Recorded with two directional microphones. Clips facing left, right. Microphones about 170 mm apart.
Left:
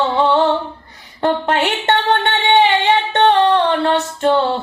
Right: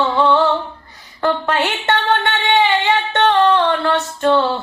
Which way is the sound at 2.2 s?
25° left (ahead or behind).